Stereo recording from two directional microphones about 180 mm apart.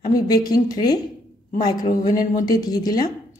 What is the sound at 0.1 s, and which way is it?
A woman's voice, 20° left (ahead or behind).